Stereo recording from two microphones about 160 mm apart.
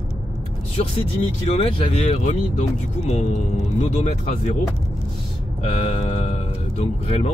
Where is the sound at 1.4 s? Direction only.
40° left (ahead or behind).